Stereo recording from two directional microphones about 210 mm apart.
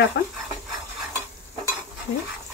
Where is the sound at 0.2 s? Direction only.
55° left (ahead or behind).